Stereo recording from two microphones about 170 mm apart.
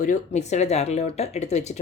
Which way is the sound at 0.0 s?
45° left (ahead or behind).